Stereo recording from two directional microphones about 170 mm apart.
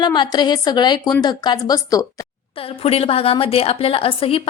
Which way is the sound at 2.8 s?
35° left (ahead or behind).